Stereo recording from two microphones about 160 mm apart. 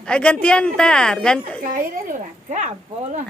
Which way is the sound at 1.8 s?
50° right (ahead or behind).